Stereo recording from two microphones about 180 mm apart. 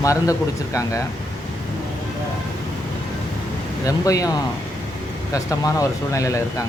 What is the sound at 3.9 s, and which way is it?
Speech, 20° left (ahead or behind).